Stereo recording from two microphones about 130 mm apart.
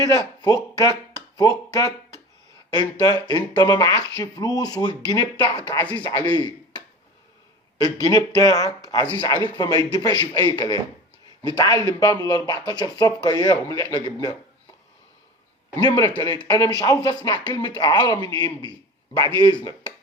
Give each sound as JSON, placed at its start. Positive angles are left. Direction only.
{"t": 0.0, "sound": "speech", "side_deg": 30}
{"t": 6.3, "sound": "a sound", "side_deg": 35}
{"t": 7.8, "sound": "speech", "side_deg": 30}
{"t": 15.8, "sound": "speech", "side_deg": 30}